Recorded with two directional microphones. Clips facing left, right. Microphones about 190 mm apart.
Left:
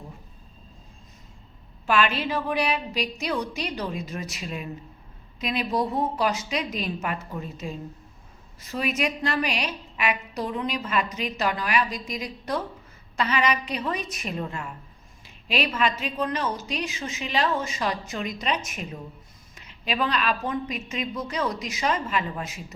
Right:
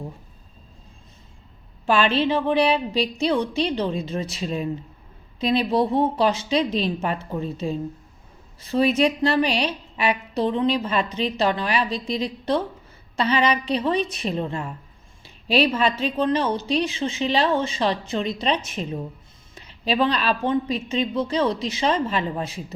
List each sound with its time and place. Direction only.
1.9 s a woman's voice: 30° right (ahead or behind)